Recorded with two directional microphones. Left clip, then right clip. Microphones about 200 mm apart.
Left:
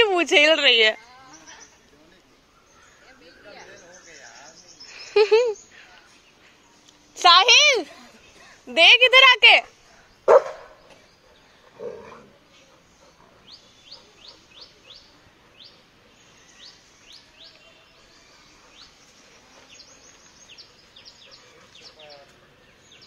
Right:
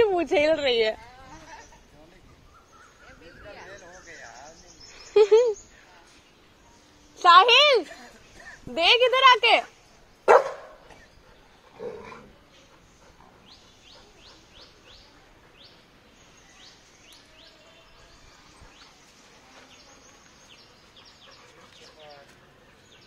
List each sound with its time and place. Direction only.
0.0 s speech: 15° left (ahead or behind)
4.9 s a sound: centre (ahead or behind)
7.2 s a woman's voice: 15° left (ahead or behind)